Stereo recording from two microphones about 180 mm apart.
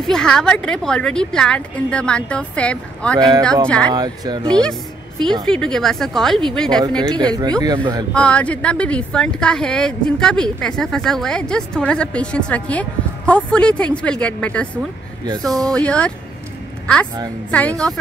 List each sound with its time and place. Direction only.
0.0 s speech: 5° left (ahead or behind)
3.2 s speech: 20° right (ahead or behind)
3.6 s speech: 5° left (ahead or behind)
3.9 s speech: 20° right (ahead or behind)
5.5 s speech: 5° left (ahead or behind)
7.2 s speech: 20° right (ahead or behind)
8.1 s a woman's voice: 5° left (ahead or behind)